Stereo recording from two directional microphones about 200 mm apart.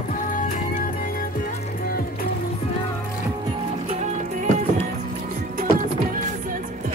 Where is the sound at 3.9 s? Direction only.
35° right (ahead or behind).